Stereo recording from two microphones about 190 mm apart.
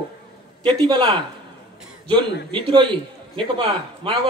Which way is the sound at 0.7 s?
25° right (ahead or behind).